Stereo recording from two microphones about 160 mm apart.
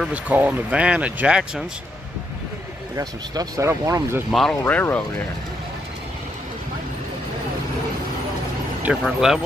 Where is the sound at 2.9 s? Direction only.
25° right (ahead or behind).